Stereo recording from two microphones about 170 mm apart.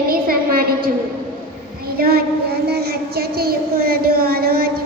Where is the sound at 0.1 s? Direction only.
60° right (ahead or behind).